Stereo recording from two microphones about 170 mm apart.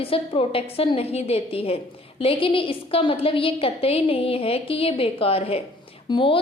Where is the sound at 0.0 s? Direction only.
35° left (ahead or behind).